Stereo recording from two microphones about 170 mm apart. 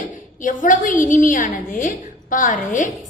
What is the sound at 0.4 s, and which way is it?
A woman's voice, 50° left (ahead or behind).